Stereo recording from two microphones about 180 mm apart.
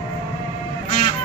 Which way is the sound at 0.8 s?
35° left (ahead or behind).